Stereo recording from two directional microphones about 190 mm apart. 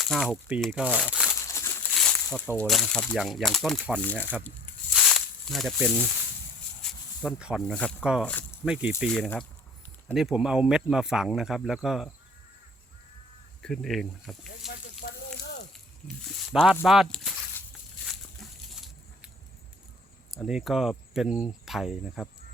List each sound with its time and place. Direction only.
0.0 s speech: centre (ahead or behind)
1.3 s speech: 15° left (ahead or behind)
4.9 s snake: centre (ahead or behind)
6.8 s speech: centre (ahead or behind)
9.0 s speech: 5° left (ahead or behind)
13.6 s speech: centre (ahead or behind)
15.0 s sizzle: 45° left (ahead or behind)
15.7 s a sound: centre (ahead or behind)
16.8 s speech: centre (ahead or behind)
20.3 s speech: centre (ahead or behind)